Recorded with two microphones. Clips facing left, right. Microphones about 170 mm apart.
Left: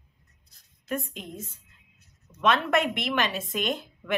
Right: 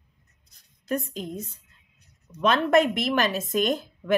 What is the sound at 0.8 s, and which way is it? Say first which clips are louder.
Speech: right 4 dB; 40° right (ahead or behind).